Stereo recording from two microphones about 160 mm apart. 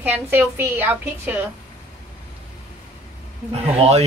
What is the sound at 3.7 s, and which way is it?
Speech, 40° right (ahead or behind).